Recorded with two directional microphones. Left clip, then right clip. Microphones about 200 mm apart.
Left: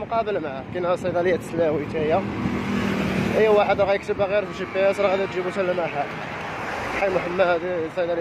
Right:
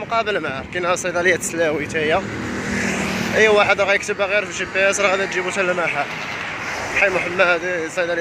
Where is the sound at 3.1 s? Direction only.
55° left (ahead or behind).